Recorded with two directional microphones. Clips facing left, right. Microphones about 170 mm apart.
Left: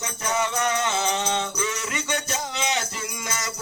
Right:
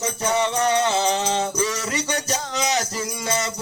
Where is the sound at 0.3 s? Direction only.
30° right (ahead or behind).